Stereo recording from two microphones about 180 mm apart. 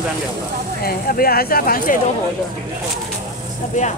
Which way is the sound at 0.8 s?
55° left (ahead or behind).